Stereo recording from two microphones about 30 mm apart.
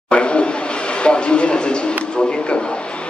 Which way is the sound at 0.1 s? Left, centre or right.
Left.